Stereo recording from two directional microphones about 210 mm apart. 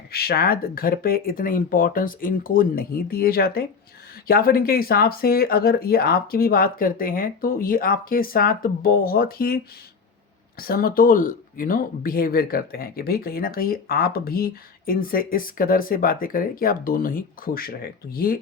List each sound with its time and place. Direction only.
0.1 s speech: 45° left (ahead or behind)
10.6 s speech: 45° left (ahead or behind)